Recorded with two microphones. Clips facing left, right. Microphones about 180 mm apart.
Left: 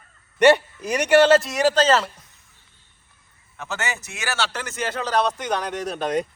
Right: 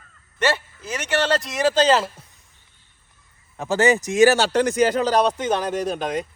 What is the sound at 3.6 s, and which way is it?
Speech, 35° right (ahead or behind).